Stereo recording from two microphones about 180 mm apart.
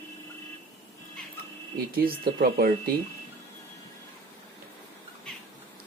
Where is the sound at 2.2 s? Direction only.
55° right (ahead or behind).